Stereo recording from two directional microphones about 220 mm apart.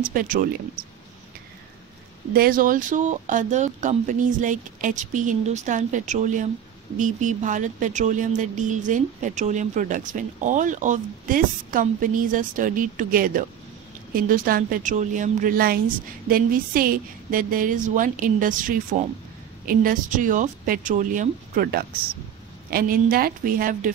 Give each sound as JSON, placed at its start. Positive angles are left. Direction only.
{"t": 0.0, "sound": "speech", "side_deg": -40}
{"t": 2.3, "sound": "speech", "side_deg": -40}